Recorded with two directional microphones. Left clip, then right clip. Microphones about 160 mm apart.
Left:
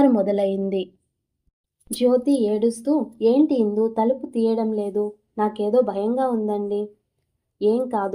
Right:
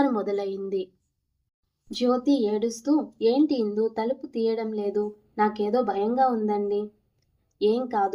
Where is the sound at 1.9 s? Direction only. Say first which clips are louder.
Left 4 dB; 25° left (ahead or behind).